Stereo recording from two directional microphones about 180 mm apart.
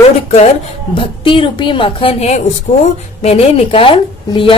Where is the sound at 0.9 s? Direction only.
30° left (ahead or behind).